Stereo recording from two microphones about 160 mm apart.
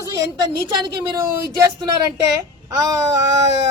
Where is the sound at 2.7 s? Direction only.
20° right (ahead or behind).